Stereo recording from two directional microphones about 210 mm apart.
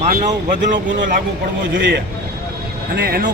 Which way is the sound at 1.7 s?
55° right (ahead or behind).